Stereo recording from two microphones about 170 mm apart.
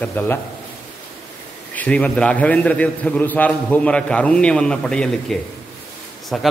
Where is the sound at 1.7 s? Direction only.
10° left (ahead or behind).